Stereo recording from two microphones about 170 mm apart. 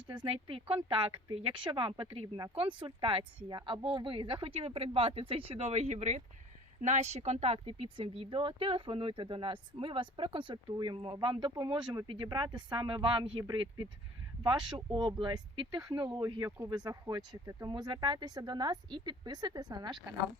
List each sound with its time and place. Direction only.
0.1 s speech: 30° right (ahead or behind)